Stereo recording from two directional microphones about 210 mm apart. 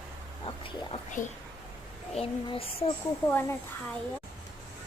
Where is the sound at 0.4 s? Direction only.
25° left (ahead or behind).